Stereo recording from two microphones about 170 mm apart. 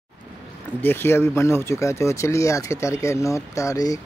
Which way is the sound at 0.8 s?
15° left (ahead or behind).